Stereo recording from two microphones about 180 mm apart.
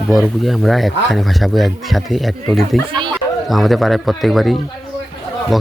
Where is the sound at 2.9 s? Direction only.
25° right (ahead or behind).